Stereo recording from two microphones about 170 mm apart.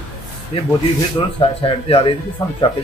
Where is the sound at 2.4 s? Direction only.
20° left (ahead or behind).